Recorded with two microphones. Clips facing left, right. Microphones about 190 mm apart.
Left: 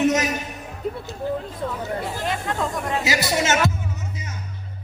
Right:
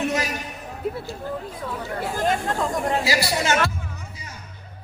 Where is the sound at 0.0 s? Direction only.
20° left (ahead or behind).